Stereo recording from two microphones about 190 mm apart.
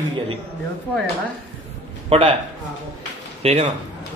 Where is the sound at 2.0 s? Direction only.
30° right (ahead or behind).